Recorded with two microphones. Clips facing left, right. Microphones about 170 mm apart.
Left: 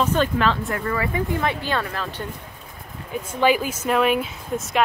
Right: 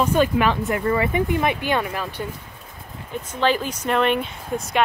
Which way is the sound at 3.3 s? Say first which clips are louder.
Left 2 dB; 10° left (ahead or behind).